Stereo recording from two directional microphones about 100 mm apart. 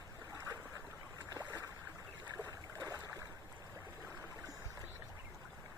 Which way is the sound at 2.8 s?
35° right (ahead or behind).